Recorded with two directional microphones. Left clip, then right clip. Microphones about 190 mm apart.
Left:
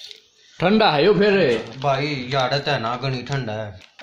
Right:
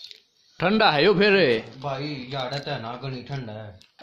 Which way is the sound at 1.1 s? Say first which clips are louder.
Left 2 dB; 25° right (ahead or behind).